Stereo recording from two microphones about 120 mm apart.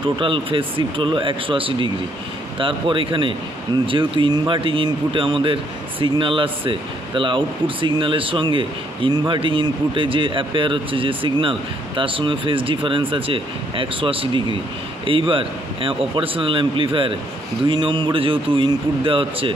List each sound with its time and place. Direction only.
0.2 s speech: 45° right (ahead or behind)